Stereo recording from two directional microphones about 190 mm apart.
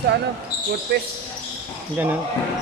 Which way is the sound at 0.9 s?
60° right (ahead or behind).